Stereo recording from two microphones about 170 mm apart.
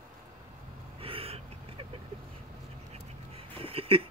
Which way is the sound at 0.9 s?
35° right (ahead or behind).